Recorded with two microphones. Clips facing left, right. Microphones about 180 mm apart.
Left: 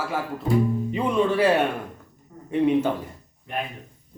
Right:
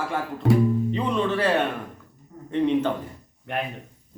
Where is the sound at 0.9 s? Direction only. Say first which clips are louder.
Left 2 dB; 10° left (ahead or behind).